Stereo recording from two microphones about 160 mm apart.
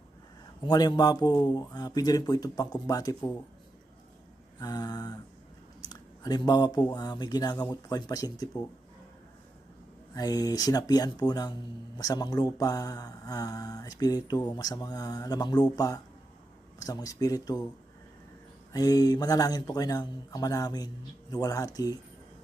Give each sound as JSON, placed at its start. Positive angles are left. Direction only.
{"t": 0.6, "sound": "mantra", "side_deg": 25}
{"t": 4.6, "sound": "mantra", "side_deg": 25}
{"t": 5.9, "sound": "speech", "side_deg": 25}
{"t": 6.9, "sound": "mantra", "side_deg": 25}
{"t": 10.2, "sound": "mantra", "side_deg": 25}
{"t": 18.7, "sound": "mantra", "side_deg": 25}